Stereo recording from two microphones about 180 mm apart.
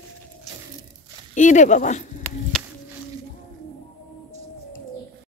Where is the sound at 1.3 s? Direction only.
45° left (ahead or behind).